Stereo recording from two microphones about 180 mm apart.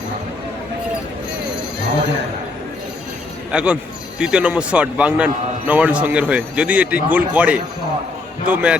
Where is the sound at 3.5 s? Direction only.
5° right (ahead or behind).